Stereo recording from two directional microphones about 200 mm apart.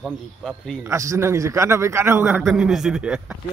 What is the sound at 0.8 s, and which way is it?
Speech, 15° right (ahead or behind).